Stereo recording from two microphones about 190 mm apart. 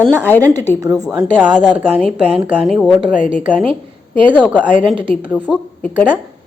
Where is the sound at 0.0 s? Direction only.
10° left (ahead or behind).